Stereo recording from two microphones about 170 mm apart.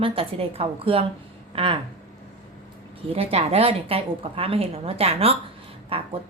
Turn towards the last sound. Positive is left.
turn(degrees=-35)  # may be behind; listen again after turning